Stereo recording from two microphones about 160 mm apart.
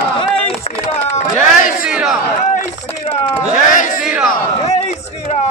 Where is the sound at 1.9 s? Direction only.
5° right (ahead or behind).